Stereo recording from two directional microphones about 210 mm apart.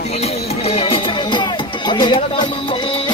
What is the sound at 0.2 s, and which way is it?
Music, 30° left (ahead or behind).